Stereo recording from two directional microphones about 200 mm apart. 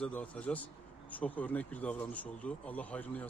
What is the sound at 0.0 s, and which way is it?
A man's voice, 5° left (ahead or behind).